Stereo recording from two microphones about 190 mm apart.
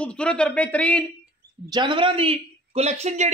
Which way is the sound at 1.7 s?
25° right (ahead or behind).